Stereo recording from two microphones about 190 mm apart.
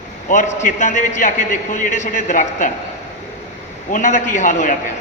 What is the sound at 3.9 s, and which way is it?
Speech, 40° left (ahead or behind).